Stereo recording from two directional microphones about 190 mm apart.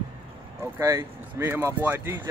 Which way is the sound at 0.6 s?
15° right (ahead or behind).